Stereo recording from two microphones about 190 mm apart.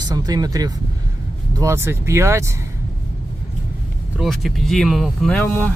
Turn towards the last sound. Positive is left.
turn(degrees=5)  # may be behind; listen again after turning